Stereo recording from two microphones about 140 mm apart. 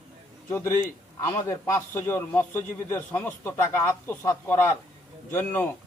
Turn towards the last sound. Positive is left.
turn(degrees=15)  # may be behind; listen again after turning